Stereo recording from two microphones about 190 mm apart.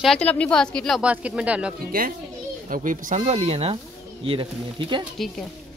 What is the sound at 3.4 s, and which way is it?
Speech, 30° right (ahead or behind).